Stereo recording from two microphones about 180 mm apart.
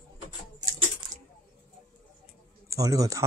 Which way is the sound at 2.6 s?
15° right (ahead or behind).